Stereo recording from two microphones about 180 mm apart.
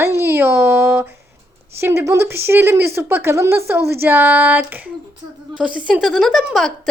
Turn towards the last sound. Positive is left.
turn(degrees=0)  # may be behind; listen again after turning